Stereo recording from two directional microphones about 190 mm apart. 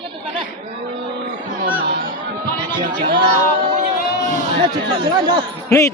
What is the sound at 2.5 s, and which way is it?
Chatter, 25° right (ahead or behind).